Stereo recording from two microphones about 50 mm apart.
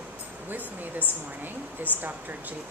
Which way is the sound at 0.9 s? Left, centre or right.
Right.